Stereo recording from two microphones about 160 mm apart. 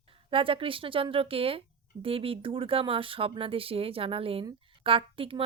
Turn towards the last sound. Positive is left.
turn(degrees=-35)  # may be behind; listen again after turning